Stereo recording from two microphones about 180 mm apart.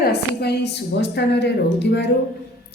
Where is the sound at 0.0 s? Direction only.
65° left (ahead or behind).